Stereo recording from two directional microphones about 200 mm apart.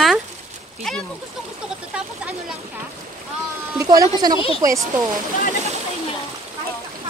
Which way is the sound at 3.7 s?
15° right (ahead or behind).